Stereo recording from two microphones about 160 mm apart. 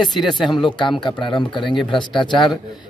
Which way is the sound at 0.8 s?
30° left (ahead or behind).